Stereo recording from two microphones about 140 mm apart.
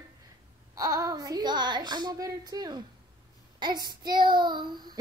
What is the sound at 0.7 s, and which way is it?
Speech, 25° right (ahead or behind).